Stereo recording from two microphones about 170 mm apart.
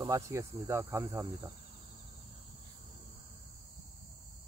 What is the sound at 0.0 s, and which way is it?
Cricket, 15° right (ahead or behind).